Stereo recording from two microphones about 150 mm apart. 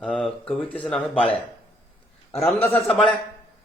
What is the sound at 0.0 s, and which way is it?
A man's voice, 5° left (ahead or behind).